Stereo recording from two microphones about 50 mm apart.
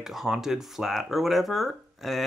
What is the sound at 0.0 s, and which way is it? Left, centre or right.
Speech, centre.